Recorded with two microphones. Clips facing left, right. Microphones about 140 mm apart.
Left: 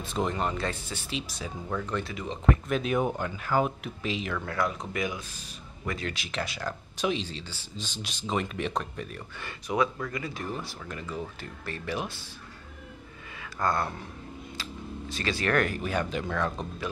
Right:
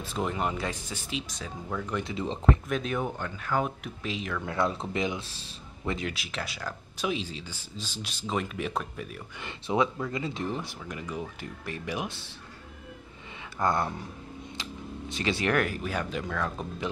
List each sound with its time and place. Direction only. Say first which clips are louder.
0.0 s speech: left 1 dB; 5° right (ahead or behind)
2.1 s speech: right 1 dB; 30° right (ahead or behind)
2.7 s speech: left 3 dB; 10° left (ahead or behind)
4.5 s speech: right 4 dB; 25° right (ahead or behind)
6.0 s speech: left 1 dB; centre (ahead or behind)
9.4 s speech: right 1 dB; 20° right (ahead or behind)
13.4 s speech: right 1 dB; 20° right (ahead or behind)
14.6 s camera: even; 20° right (ahead or behind)
15.5 s speech: left 1 dB; 5° right (ahead or behind)